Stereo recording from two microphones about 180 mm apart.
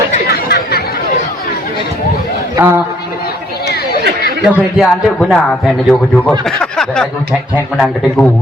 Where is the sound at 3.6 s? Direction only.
65° left (ahead or behind).